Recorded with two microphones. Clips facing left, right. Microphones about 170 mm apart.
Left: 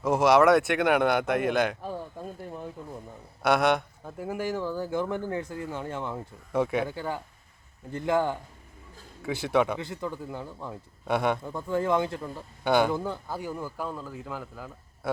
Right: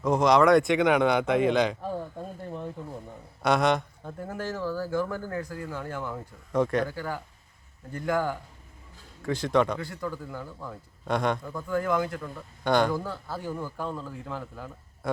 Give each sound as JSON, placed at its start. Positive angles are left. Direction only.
{"t": 0.0, "sound": "speech", "side_deg": 5}
{"t": 3.4, "sound": "speech", "side_deg": 0}
{"t": 6.5, "sound": "speech", "side_deg": 10}
{"t": 6.8, "sound": "speech", "side_deg": 25}
{"t": 9.2, "sound": "speech", "side_deg": 10}
{"t": 9.7, "sound": "speech", "side_deg": 20}
{"t": 11.0, "sound": "a man's voice", "side_deg": 5}
{"t": 11.4, "sound": "speech", "side_deg": 25}
{"t": 12.6, "sound": "speech", "side_deg": 5}
{"t": 12.9, "sound": "speech", "side_deg": 20}